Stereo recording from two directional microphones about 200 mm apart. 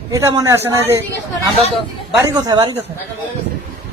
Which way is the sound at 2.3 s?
20° right (ahead or behind).